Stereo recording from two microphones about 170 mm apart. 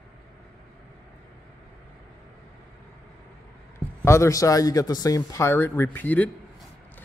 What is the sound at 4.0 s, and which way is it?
Speech, 15° left (ahead or behind).